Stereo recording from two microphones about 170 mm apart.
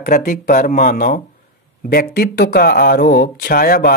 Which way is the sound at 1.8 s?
65° left (ahead or behind).